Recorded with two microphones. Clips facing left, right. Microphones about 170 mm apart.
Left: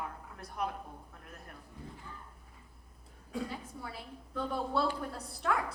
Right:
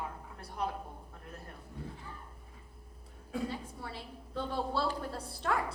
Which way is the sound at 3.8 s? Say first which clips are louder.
Right 1 dB; 30° right (ahead or behind).